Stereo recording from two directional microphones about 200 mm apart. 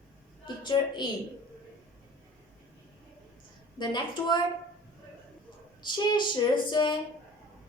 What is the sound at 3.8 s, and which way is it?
Speech, 20° left (ahead or behind).